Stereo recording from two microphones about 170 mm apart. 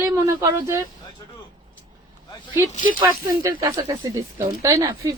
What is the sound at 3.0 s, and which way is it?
Speech, 15° right (ahead or behind).